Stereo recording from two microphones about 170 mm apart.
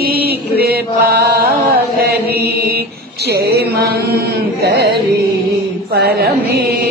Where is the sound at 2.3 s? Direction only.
70° right (ahead or behind).